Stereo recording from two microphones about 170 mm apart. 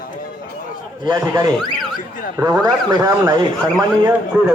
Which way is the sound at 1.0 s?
20° right (ahead or behind).